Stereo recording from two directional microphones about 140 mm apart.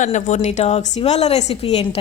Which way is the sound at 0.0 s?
55° left (ahead or behind).